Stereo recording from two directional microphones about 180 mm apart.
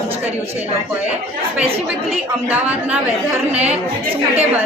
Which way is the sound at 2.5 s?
10° right (ahead or behind).